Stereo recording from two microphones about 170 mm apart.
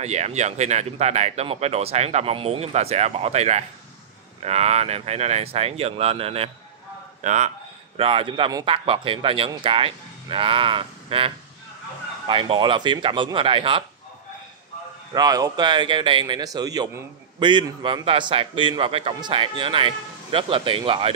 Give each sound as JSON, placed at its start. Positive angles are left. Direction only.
{"t": 0.0, "sound": "speech", "side_deg": -40}
{"t": 15.1, "sound": "a man's voice", "side_deg": -20}